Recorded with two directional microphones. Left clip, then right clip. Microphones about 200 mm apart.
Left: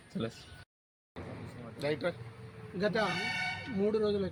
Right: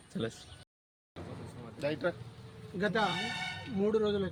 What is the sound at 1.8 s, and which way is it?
Speech, 35° left (ahead or behind).